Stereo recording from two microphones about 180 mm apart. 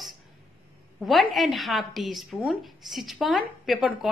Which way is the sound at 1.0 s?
Centre (ahead or behind).